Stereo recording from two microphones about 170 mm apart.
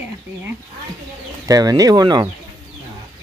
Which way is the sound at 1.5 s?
20° right (ahead or behind).